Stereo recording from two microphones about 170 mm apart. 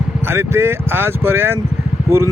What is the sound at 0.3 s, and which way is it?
Speech, 15° right (ahead or behind).